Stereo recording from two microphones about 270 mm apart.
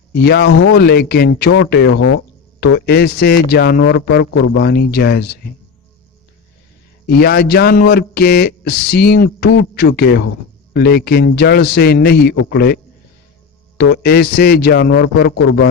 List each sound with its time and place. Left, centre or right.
0.2 s speech: left
2.0 s speech: left
2.6 s speech: left
7.1 s speech: left
13.9 s speech: left
15.4 s a man's voice: left